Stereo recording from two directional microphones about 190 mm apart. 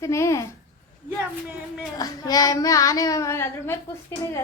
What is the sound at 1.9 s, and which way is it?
Speech, 20° left (ahead or behind).